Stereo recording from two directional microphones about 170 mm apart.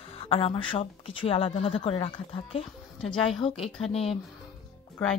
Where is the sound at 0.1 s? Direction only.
35° left (ahead or behind).